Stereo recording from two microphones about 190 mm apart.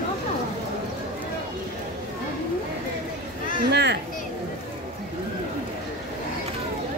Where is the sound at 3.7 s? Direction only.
65° right (ahead or behind).